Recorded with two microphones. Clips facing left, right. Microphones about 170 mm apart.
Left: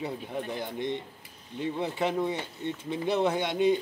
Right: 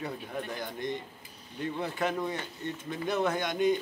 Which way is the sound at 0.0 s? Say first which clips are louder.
Left 3 dB; 20° left (ahead or behind).